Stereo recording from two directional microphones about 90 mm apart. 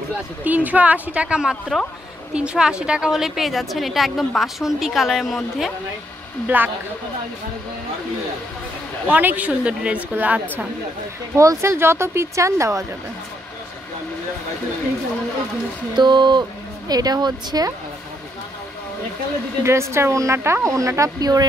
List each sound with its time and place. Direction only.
0.4 s a woman's voice: 15° right (ahead or behind); by 5.7 s centre (ahead or behind)
6.4 s speech: 20° right (ahead or behind)
9.0 s a woman's voice: 20° right (ahead or behind)
11.3 s a woman's voice: 30° right (ahead or behind)
16.0 s speech: 55° right (ahead or behind)
19.6 s a woman's voice: 30° right (ahead or behind)